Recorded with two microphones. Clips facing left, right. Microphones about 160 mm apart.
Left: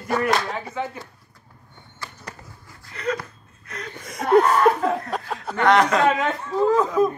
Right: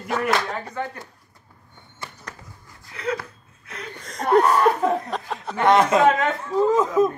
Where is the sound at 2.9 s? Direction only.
10° right (ahead or behind).